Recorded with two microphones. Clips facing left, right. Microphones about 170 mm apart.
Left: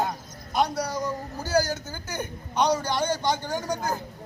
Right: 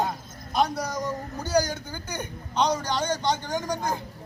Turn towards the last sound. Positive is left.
turn(degrees=5)  # may be behind; listen again after turning